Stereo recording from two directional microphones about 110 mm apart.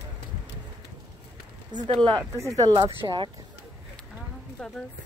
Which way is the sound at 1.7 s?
40° right (ahead or behind).